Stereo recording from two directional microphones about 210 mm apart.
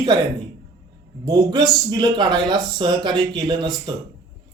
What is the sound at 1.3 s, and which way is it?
A man's voice, 20° right (ahead or behind).